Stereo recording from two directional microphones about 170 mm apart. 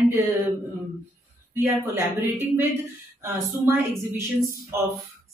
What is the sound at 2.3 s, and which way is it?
A woman's voice, 10° right (ahead or behind).